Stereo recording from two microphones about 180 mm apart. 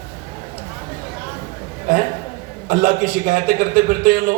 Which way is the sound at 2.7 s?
50° right (ahead or behind).